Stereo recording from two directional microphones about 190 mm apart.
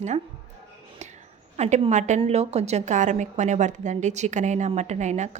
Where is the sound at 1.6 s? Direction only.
35° right (ahead or behind).